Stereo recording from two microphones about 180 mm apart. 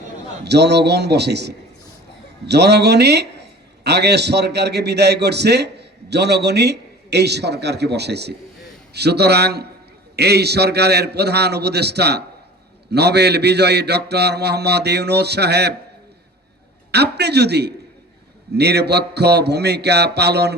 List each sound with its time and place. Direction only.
0.4 s a man's voice: 65° right (ahead or behind)
8.9 s mantra: 65° right (ahead or behind)
16.9 s mantra: 65° right (ahead or behind)